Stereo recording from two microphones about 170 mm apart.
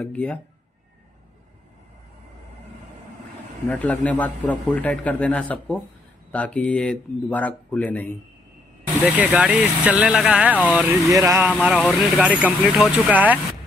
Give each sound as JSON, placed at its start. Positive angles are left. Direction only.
{"t": 0.0, "sound": "a man's voice", "side_deg": 10}
{"t": 3.6, "sound": "a man's voice", "side_deg": 10}
{"t": 9.0, "sound": "speech", "side_deg": -10}
{"t": 11.1, "sound": "speech", "side_deg": -15}
{"t": 11.6, "sound": "speech", "side_deg": 0}